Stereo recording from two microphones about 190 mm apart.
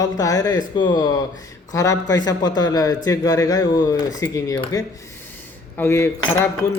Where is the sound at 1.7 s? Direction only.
20° left (ahead or behind).